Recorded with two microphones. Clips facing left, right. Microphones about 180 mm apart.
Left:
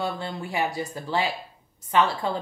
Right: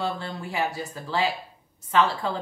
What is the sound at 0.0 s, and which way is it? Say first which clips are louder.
Speech: even; 15° left (ahead or behind).